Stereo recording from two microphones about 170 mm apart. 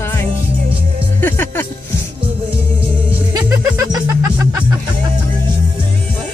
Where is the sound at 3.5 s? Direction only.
15° right (ahead or behind).